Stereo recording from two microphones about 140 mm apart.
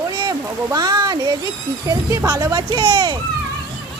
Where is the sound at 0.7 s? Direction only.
30° right (ahead or behind).